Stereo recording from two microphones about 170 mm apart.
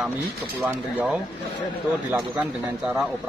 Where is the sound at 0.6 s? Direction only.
10° right (ahead or behind).